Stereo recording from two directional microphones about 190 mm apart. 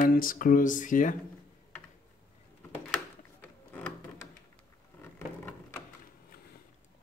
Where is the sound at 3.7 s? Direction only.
5° left (ahead or behind).